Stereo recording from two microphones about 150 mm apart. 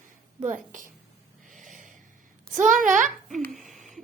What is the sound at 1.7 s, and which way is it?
Snort, 60° right (ahead or behind).